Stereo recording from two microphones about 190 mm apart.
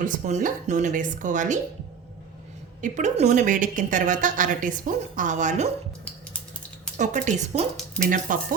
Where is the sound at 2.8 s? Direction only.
40° right (ahead or behind).